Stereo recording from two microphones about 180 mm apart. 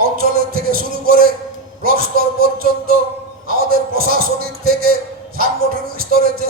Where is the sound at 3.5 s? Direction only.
55° right (ahead or behind).